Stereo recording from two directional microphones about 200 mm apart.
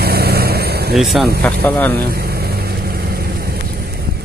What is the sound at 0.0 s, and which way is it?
Vehicle, 50° right (ahead or behind).